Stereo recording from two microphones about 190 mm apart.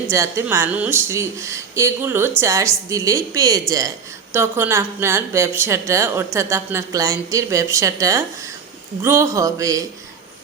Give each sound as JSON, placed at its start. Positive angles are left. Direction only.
{"t": 0.1, "sound": "a woman's voice", "side_deg": -15}